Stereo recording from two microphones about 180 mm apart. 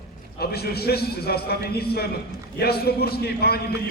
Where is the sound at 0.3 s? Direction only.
60° left (ahead or behind).